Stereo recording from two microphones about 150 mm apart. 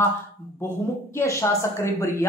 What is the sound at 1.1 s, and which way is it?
A man's voice, 20° left (ahead or behind).